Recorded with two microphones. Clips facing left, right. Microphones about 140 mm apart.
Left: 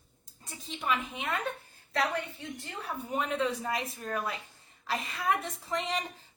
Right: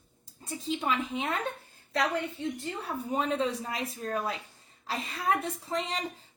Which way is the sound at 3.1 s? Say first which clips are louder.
Right 2 dB; 30° right (ahead or behind).